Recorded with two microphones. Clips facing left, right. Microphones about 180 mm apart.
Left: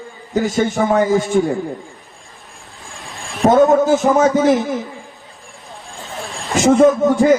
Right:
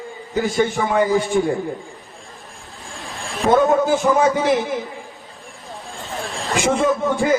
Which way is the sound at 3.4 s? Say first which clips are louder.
Left 4 dB; 40° left (ahead or behind).